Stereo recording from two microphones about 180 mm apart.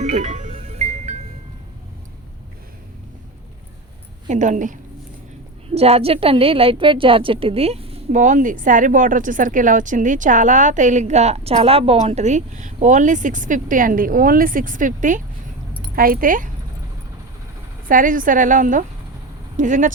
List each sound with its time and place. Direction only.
0.0 s music: 40° right (ahead or behind)
4.3 s a woman's voice: 45° right (ahead or behind)
5.7 s a woman's voice: 35° right (ahead or behind)
8.2 s a woman's voice: 45° right (ahead or behind)
17.8 s a woman's voice: 50° right (ahead or behind)